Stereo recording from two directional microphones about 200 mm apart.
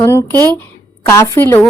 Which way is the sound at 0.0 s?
15° left (ahead or behind).